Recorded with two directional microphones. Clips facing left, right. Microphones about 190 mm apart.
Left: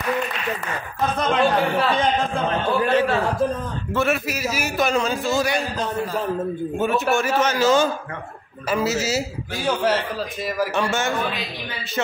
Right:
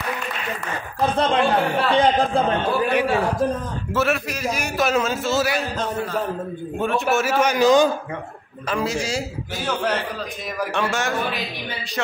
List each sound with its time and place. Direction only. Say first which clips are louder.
1.0 s a man's voice: right 1 dB; 30° right (ahead or behind)
2.8 s a man's voice: left 3 dB; 15° right (ahead or behind)
3.9 s a man's voice: even; centre (ahead or behind)
6.8 s a man's voice: even; centre (ahead or behind); by 7.9 s 15° right (ahead or behind)
8.6 s a man's voice: left 2 dB; 5° left (ahead or behind)
10.6 s a man's voice: left 1 dB; centre (ahead or behind)